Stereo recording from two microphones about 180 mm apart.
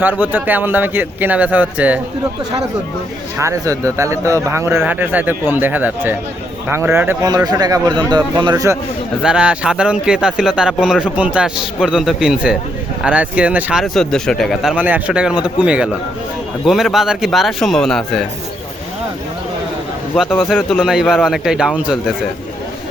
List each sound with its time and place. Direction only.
0.2 s a man's voice: 10° right (ahead or behind)
3.4 s a man's voice: 15° right (ahead or behind)
9.2 s a man's voice: 5° right (ahead or behind)
20.1 s a man's voice: centre (ahead or behind)